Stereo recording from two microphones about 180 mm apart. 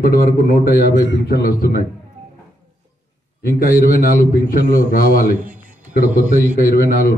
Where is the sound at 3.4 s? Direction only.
55° left (ahead or behind).